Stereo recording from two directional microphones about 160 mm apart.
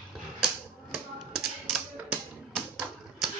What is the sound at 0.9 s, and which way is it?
Tap, centre (ahead or behind).